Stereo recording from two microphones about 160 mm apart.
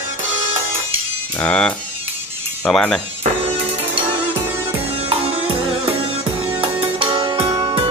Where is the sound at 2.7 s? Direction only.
5° left (ahead or behind).